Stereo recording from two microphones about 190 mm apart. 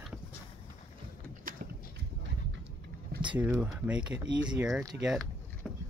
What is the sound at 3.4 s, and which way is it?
Speech, 5° right (ahead or behind).